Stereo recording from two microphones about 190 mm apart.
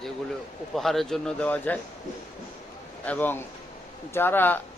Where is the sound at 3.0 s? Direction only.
10° left (ahead or behind).